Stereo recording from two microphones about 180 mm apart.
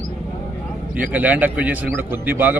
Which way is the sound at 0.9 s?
10° right (ahead or behind).